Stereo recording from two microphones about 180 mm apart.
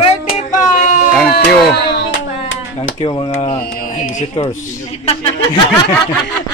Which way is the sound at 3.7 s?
50° left (ahead or behind).